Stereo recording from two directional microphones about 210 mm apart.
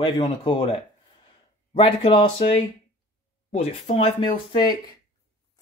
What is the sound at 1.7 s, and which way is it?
Speech, 25° left (ahead or behind).